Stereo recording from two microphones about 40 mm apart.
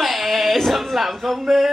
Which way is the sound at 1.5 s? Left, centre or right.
Centre.